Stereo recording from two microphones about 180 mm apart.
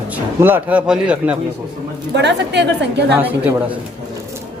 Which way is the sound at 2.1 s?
70° right (ahead or behind).